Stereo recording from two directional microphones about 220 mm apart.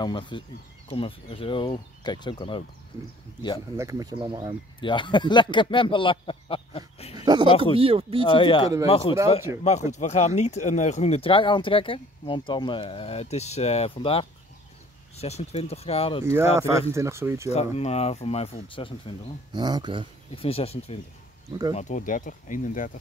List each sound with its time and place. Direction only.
0.0 s speech: 20° left (ahead or behind)
3.7 s speech: 15° right (ahead or behind)
4.7 s speech: 20° left (ahead or behind)
7.8 s speech: 25° right (ahead or behind)
8.3 s speech: 25° left (ahead or behind)
16.3 s speech: 10° right (ahead or behind)
17.5 s speech: 30° left (ahead or behind)
19.5 s speech: 20° right (ahead or behind)
20.3 s speech: 25° left (ahead or behind)